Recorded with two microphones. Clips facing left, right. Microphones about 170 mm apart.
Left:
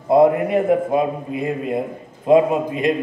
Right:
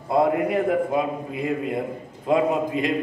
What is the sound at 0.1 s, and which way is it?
A man's voice, 20° left (ahead or behind).